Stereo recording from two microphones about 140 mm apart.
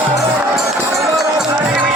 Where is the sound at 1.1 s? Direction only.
5° right (ahead or behind).